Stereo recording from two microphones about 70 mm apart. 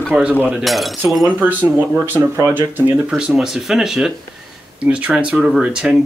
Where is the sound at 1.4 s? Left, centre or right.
Right.